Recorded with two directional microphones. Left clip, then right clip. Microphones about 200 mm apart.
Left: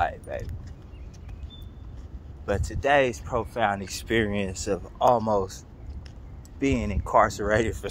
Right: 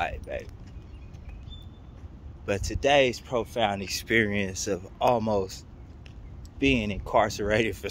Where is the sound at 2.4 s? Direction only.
10° right (ahead or behind).